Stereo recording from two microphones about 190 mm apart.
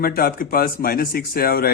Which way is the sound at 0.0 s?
50° left (ahead or behind).